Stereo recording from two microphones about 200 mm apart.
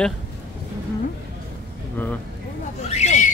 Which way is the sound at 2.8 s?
35° left (ahead or behind).